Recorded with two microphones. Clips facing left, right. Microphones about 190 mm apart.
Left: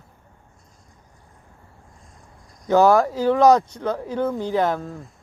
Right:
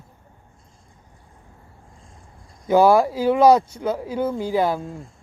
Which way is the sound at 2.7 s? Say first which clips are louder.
Right 1 dB; 10° right (ahead or behind).